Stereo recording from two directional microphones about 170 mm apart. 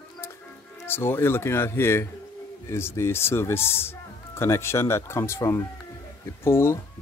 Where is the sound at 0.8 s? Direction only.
15° left (ahead or behind).